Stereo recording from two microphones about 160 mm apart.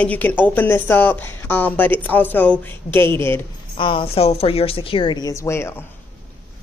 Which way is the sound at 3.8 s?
30° left (ahead or behind).